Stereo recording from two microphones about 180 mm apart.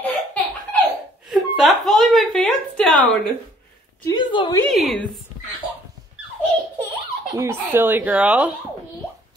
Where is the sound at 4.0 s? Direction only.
25° left (ahead or behind).